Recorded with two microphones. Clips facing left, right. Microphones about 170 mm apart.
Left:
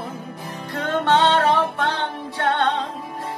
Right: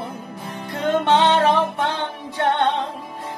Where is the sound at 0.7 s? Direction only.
20° right (ahead or behind).